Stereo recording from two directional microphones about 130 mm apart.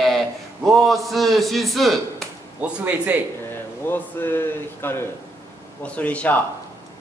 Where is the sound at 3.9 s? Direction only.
15° left (ahead or behind).